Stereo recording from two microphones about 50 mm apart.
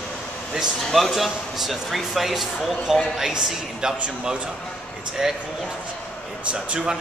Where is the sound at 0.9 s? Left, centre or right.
Centre.